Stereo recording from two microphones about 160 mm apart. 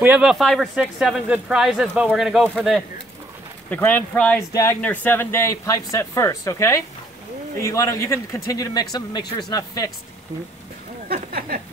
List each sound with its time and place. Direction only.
0.0 s speech: 5° right (ahead or behind)
3.7 s a man's voice: 10° left (ahead or behind)
11.1 s speech: 70° right (ahead or behind)